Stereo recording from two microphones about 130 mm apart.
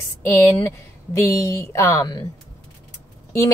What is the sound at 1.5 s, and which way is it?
Speech, 15° left (ahead or behind).